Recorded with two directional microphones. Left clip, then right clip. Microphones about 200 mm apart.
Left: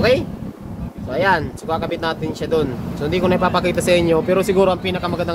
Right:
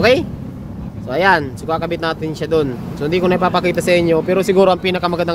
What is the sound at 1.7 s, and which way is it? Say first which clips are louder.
Speech: right 2 dB; 30° right (ahead or behind).